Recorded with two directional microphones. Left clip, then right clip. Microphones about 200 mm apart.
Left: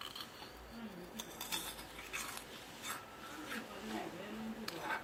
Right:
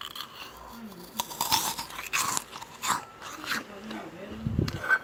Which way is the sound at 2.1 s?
35° right (ahead or behind).